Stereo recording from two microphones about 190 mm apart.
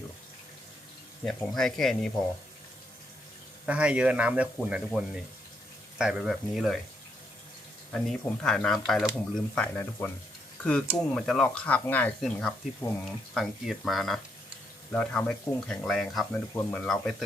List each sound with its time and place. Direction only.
1.2 s speech: 5° left (ahead or behind)
3.7 s speech: 5° right (ahead or behind)
7.9 s speech: 5° left (ahead or behind)